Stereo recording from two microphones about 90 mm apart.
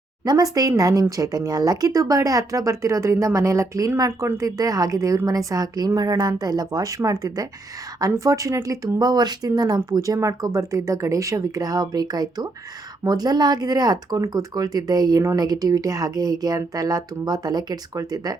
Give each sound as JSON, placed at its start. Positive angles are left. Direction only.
{"t": 0.3, "sound": "speech", "side_deg": -45}